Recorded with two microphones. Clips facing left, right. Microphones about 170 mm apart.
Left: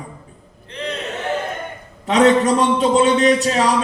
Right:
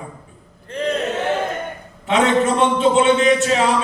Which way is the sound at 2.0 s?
40° left (ahead or behind).